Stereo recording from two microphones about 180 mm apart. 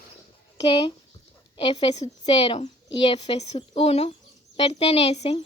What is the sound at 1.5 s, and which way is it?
A woman's voice, 30° left (ahead or behind).